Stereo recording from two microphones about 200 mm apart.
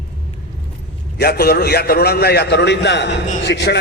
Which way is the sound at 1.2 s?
55° left (ahead or behind).